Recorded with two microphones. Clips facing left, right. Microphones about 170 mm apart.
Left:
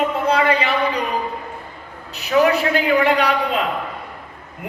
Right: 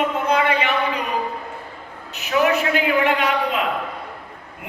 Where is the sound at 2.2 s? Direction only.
35° left (ahead or behind).